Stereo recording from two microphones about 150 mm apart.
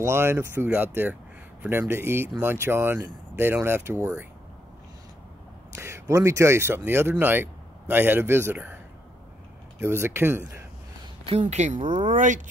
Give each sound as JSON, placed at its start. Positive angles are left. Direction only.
{"t": 0.0, "sound": "speech", "side_deg": -15}
{"t": 5.8, "sound": "speech", "side_deg": -20}
{"t": 9.8, "sound": "speech", "side_deg": -15}
{"t": 11.2, "sound": "speech", "side_deg": -50}